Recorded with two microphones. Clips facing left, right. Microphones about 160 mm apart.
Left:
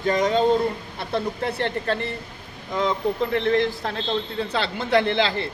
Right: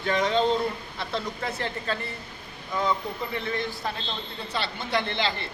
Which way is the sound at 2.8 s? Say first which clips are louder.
Left 5 dB; 80° left.